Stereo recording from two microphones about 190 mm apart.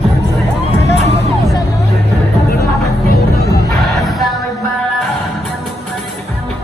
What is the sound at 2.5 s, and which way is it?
Music, 55° left (ahead or behind).